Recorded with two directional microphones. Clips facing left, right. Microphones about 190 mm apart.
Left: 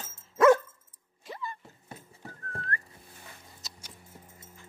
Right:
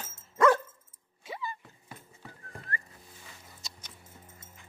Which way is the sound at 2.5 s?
5° right (ahead or behind).